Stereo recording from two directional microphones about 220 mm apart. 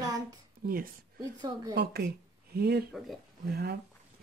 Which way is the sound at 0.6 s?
40° right (ahead or behind).